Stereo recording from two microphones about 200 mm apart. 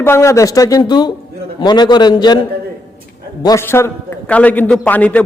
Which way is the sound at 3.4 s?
15° left (ahead or behind).